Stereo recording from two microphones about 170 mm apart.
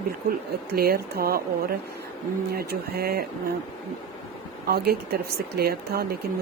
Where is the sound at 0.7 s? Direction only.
65° right (ahead or behind).